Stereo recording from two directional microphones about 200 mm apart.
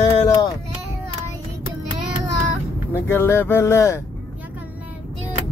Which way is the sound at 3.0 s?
10° left (ahead or behind).